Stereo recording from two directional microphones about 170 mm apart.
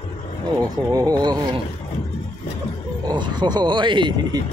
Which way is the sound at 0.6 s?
20° right (ahead or behind).